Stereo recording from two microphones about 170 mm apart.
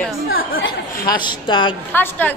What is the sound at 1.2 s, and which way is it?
Speech, 30° left (ahead or behind).